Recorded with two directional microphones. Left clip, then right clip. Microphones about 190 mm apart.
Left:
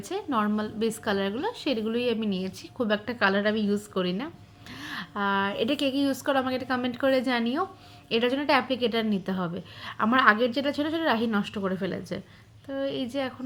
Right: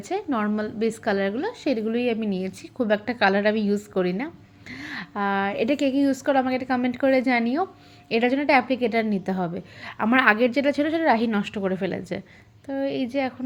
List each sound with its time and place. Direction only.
0.1 s a woman's voice: 15° right (ahead or behind)